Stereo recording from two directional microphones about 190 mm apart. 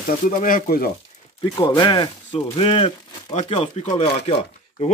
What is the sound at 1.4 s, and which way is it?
A man's voice, 25° left (ahead or behind).